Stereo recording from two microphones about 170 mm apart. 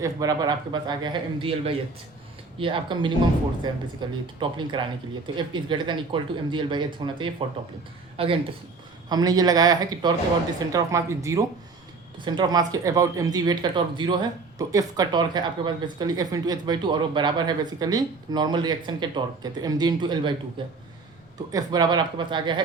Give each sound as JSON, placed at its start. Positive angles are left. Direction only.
{"t": 0.0, "sound": "speech", "side_deg": -20}
{"t": 9.0, "sound": "speech", "side_deg": -25}